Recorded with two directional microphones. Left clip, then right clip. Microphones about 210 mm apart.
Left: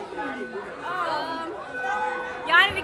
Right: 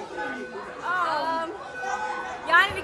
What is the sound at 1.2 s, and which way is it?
Chatter, 25° right (ahead or behind).